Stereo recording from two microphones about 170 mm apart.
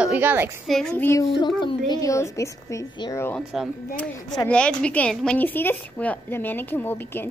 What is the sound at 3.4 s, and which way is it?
A woman's voice, centre (ahead or behind).